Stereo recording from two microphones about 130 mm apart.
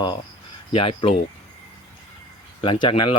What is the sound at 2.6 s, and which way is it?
Speech, 40° left (ahead or behind).